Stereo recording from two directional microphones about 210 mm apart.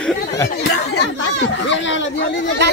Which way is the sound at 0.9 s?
55° left (ahead or behind).